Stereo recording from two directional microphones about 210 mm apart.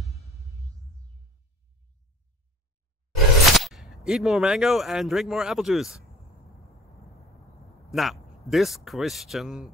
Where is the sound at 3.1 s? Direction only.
Centre (ahead or behind).